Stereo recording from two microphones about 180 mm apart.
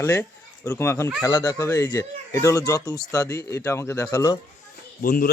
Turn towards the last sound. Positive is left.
turn(degrees=55)  # may be behind; listen again after turning